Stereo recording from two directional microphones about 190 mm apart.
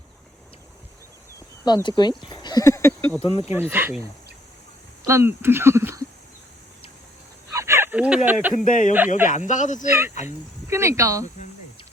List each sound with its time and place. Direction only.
1.6 s speech: 20° left (ahead or behind)
2.3 s a sound: 20° left (ahead or behind)
3.2 s speech: 30° left (ahead or behind)
3.5 s speech: 10° right (ahead or behind)
5.0 s speech: 15° right (ahead or behind)
7.5 s a sound: 15° right (ahead or behind)
8.5 s speech: 45° left (ahead or behind)
10.2 s speech: 15° right (ahead or behind)